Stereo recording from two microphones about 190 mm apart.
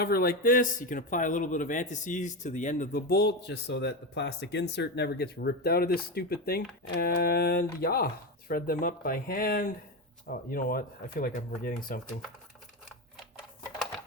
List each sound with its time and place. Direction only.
0.0 s speech: 50° left (ahead or behind)